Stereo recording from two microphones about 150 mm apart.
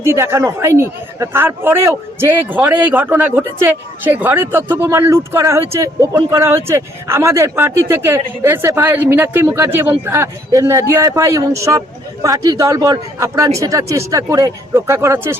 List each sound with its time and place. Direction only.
0.0 s a man's voice: 15° right (ahead or behind)